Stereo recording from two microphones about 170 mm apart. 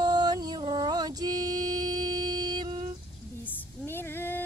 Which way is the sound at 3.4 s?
15° left (ahead or behind).